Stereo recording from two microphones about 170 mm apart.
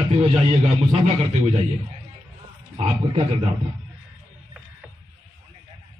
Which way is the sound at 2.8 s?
35° right (ahead or behind).